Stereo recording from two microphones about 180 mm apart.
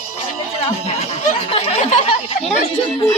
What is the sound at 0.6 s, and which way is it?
Speech, 40° left (ahead or behind).